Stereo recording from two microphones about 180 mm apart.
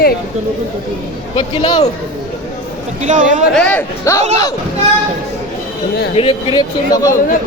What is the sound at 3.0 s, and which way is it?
Speech, 45° right (ahead or behind).